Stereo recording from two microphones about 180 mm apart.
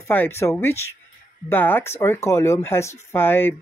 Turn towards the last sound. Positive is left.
turn(degrees=10)  # may be behind; listen again after turning